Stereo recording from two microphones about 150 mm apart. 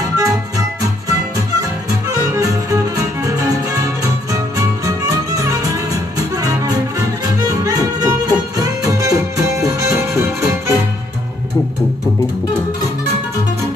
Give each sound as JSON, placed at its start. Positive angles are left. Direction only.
{"t": 0.2, "sound": "music", "side_deg": -25}